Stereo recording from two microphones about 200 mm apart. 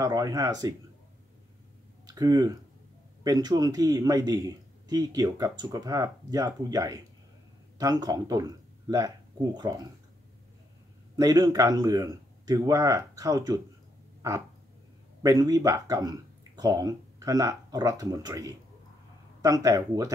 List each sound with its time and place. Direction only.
0.0 s speech: 20° right (ahead or behind)
2.0 s a man's voice: 20° right (ahead or behind)
11.1 s speech: 20° right (ahead or behind)
15.2 s speech: 15° right (ahead or behind)